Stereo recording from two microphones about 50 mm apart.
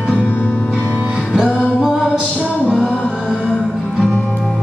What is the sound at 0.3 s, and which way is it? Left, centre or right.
Music, left.